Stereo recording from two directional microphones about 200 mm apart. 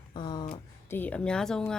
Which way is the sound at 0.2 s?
20° left (ahead or behind).